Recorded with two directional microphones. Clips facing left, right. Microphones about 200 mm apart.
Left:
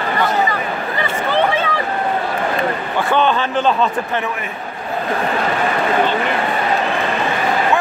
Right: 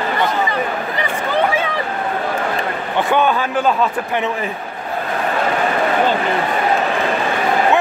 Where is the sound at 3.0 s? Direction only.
10° right (ahead or behind).